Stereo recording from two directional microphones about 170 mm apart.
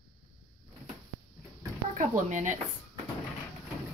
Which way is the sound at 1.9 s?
45° right (ahead or behind).